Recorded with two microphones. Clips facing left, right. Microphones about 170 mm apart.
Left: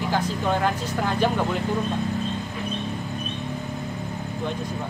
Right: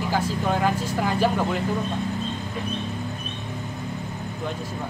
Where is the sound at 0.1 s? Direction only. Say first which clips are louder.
Even; 5° right (ahead or behind).